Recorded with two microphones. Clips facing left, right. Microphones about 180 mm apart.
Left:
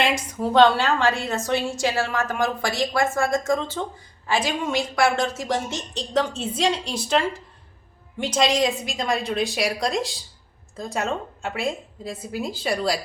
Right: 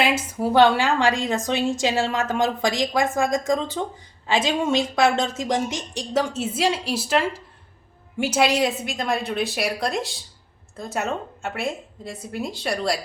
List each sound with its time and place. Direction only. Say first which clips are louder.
0.0 s a woman's voice: right 1 dB; 5° right (ahead or behind)